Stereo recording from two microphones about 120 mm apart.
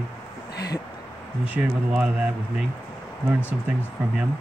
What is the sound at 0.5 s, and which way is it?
Speech, 30° left (ahead or behind).